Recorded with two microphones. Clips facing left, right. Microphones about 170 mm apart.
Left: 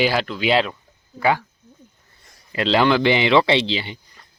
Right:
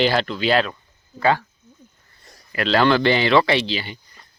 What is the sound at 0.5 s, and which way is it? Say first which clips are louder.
Speech: left 1 dB; 20° left (ahead or behind).